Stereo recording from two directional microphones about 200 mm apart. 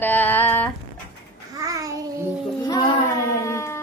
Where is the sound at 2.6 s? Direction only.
20° left (ahead or behind).